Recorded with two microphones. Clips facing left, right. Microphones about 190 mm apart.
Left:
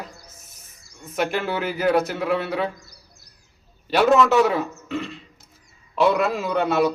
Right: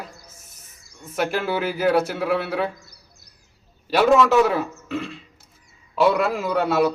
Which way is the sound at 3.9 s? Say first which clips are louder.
Even; 5° right (ahead or behind).